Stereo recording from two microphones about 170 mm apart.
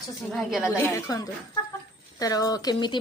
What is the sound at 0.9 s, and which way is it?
A woman's voice, 20° left (ahead or behind).